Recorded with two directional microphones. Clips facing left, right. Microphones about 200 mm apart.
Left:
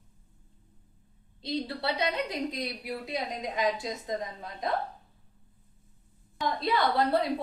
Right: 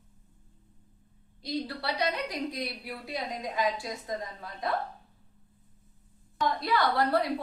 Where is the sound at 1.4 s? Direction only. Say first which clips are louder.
Left 1 dB; 25° left (ahead or behind).